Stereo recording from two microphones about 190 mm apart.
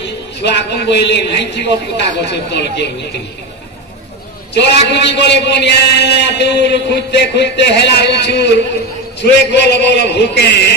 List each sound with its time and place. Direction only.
0.0 s a man's voice: 65° left (ahead or behind)
4.6 s a man's voice: 65° left (ahead or behind)